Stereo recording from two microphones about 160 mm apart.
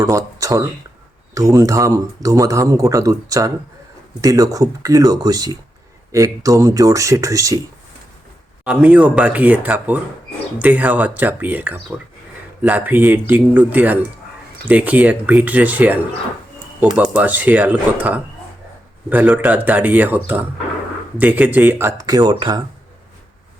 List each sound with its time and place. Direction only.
0.0 s speech: 20° right (ahead or behind)
8.6 s speech: 5° right (ahead or behind)
17.0 s speech: 10° right (ahead or behind); by 22.6 s 30° right (ahead or behind)